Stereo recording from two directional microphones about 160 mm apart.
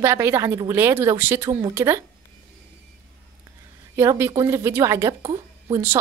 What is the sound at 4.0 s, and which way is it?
Speech, 15° right (ahead or behind).